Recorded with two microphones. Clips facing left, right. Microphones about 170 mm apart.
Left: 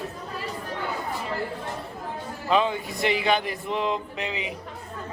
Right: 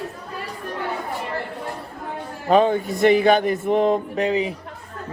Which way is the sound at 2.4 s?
45° right (ahead or behind).